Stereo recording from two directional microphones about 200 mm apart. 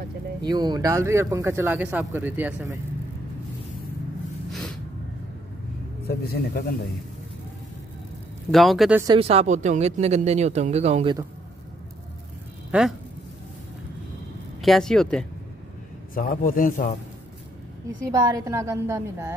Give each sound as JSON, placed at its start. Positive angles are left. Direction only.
{"t": 0.4, "sound": "speech", "side_deg": -20}
{"t": 4.5, "sound": "snort", "side_deg": 0}
{"t": 6.0, "sound": "a man's voice", "side_deg": 50}
{"t": 8.5, "sound": "speech", "side_deg": 0}
{"t": 9.0, "sound": "speech", "side_deg": -25}
{"t": 12.7, "sound": "speech", "side_deg": -5}
{"t": 14.6, "sound": "speech", "side_deg": 0}
{"t": 16.2, "sound": "a man's voice", "side_deg": 45}
{"t": 18.0, "sound": "speech", "side_deg": -20}